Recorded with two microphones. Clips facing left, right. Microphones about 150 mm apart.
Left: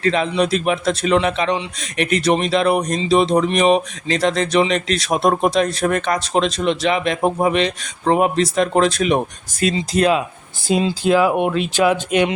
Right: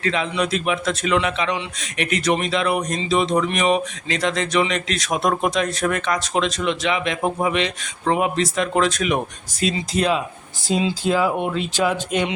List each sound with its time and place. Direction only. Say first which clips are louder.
0.0 s a man's voice: left 5 dB; 35° left (ahead or behind)
9.6 s speech: left 4 dB; 50° left (ahead or behind); by 12.3 s 70° left (ahead or behind)